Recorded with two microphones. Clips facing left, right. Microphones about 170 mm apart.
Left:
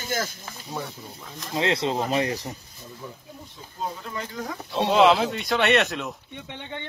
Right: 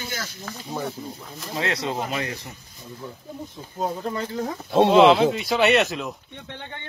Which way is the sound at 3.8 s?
40° right (ahead or behind).